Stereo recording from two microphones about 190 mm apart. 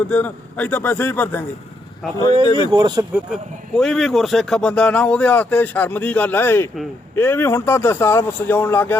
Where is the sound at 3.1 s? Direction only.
Centre (ahead or behind).